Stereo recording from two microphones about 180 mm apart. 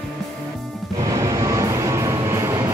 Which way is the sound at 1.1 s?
15° right (ahead or behind).